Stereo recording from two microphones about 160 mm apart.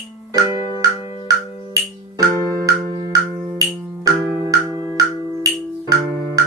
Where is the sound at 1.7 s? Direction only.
20° right (ahead or behind).